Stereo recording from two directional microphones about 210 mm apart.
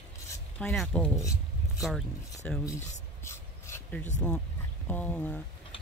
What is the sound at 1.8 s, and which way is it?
Speech, centre (ahead or behind).